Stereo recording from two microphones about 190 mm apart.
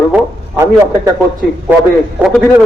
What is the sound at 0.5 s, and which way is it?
Speech, 15° right (ahead or behind).